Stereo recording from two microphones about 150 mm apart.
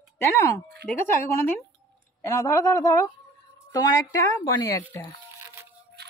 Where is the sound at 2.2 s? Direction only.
20° left (ahead or behind).